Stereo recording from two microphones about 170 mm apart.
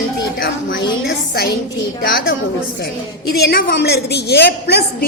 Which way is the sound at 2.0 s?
60° left (ahead or behind).